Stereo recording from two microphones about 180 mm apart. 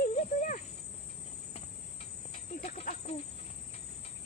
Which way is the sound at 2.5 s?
45° left (ahead or behind).